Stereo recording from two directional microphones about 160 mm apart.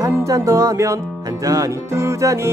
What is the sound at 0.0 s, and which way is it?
Music, 20° right (ahead or behind).